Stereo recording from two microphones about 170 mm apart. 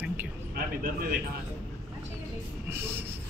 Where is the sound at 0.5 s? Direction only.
60° right (ahead or behind).